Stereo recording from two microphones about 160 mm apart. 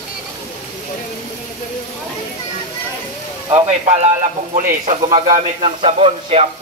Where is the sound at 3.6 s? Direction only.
40° right (ahead or behind).